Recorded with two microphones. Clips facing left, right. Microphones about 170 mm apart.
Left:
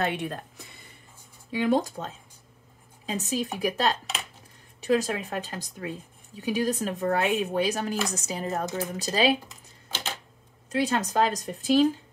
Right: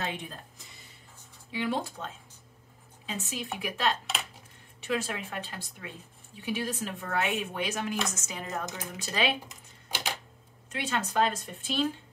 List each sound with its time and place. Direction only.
0.0 s speech: 65° left (ahead or behind)
1.5 s speech: 45° left (ahead or behind)
9.8 s typewriter: 15° right (ahead or behind)
10.7 s speech: 35° left (ahead or behind)